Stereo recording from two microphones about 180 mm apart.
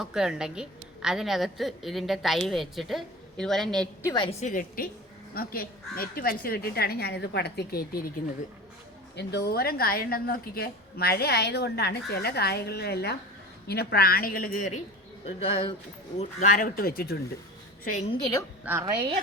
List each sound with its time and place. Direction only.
0.0 s a woman's voice: 5° right (ahead or behind)
4.0 s a woman's voice: 20° left (ahead or behind)
4.3 s a woman's voice: 40° left (ahead or behind); by 8.0 s 60° left (ahead or behind)
9.1 s a woman's voice: 65° left (ahead or behind)
15.2 s speech: 30° left (ahead or behind)
16.1 s speech: 45° left (ahead or behind)
18.1 s a woman's voice: 20° left (ahead or behind)
18.6 s a woman's voice: 15° right (ahead or behind)